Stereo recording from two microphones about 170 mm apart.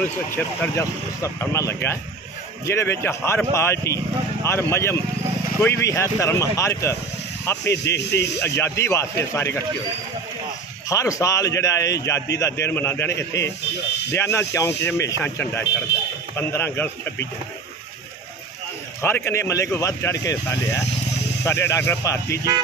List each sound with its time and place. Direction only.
0.0 s speech: 10° left (ahead or behind)
7.6 s speech: 80° left
8.4 s speech: 15° left (ahead or behind)
10.9 s a man's voice: 20° left (ahead or behind)
15.9 s a man's voice: 90° left
16.3 s speech: 15° left (ahead or behind)
18.9 s speech: 15° left (ahead or behind)